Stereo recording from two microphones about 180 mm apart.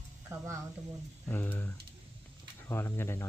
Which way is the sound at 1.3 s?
10° left (ahead or behind).